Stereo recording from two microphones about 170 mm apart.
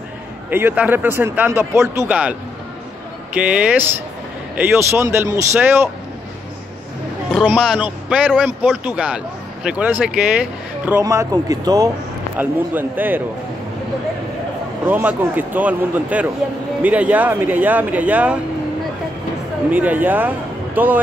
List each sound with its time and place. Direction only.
0.5 s speech: 10° right (ahead or behind)
3.4 s speech: 5° right (ahead or behind)
7.3 s speech: 5° right (ahead or behind)
11.0 s speech: 20° right (ahead or behind)
14.9 s speech: 10° right (ahead or behind)
19.7 s speech: 10° right (ahead or behind)